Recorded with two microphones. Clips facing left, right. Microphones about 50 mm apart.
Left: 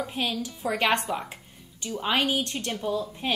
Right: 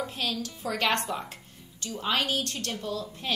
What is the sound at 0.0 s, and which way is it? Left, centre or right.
A woman's voice, centre.